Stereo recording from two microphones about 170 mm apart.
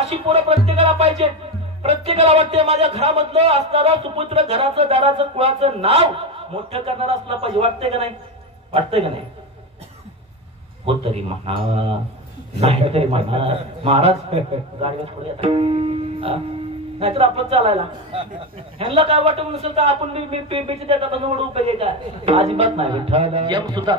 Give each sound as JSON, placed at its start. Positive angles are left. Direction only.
{"t": 0.0, "sound": "a man's voice", "side_deg": -35}
{"t": 10.9, "sound": "a man's voice", "side_deg": -35}